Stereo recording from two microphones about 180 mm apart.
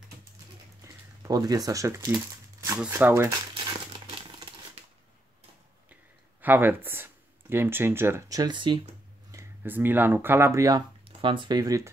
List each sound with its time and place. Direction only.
0.8 s crumpling: 20° right (ahead or behind)
2.9 s speech: 10° right (ahead or behind)
3.5 s crumpling: 25° right (ahead or behind)
6.4 s speech: 10° right (ahead or behind); by 8.8 s 25° right (ahead or behind)
9.3 s speech: 15° right (ahead or behind)
11.1 s speech: 30° right (ahead or behind)